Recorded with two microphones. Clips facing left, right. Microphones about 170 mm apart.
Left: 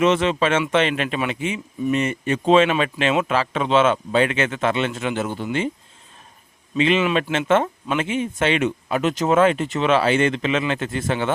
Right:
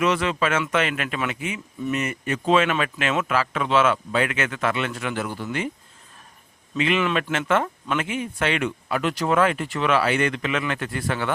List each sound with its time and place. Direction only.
0.0 s speech: 25° left (ahead or behind)
6.7 s speech: 25° left (ahead or behind)